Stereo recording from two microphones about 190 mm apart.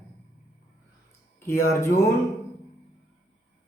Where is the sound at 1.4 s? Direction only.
15° left (ahead or behind).